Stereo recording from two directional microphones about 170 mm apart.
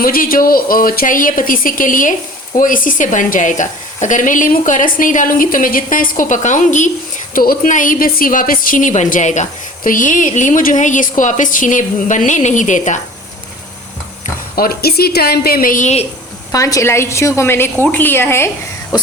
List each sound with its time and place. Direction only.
0.0 s a woman's voice: 55° left (ahead or behind)
7.3 s a woman's voice: 60° left (ahead or behind)
14.5 s speech: 60° left (ahead or behind); by 16.0 s 45° left (ahead or behind)
16.5 s a woman's voice: 20° left (ahead or behind)